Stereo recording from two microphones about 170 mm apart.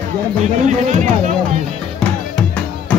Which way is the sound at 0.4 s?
45° right (ahead or behind).